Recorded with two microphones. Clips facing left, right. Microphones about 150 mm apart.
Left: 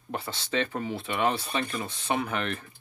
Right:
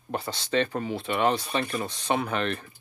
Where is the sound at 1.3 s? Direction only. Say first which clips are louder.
Right 3 dB; 20° right (ahead or behind).